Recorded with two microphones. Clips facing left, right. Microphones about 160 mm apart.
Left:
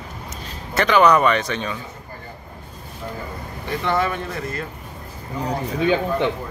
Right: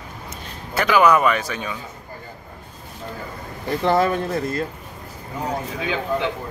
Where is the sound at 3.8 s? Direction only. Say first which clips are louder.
Right 4 dB; 35° right (ahead or behind).